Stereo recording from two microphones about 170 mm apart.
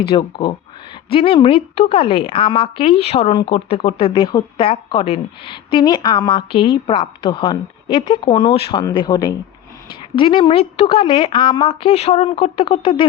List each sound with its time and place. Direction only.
0.0 s speech: 30° left (ahead or behind)